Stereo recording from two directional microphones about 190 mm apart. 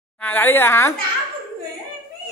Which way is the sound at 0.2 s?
10° left (ahead or behind).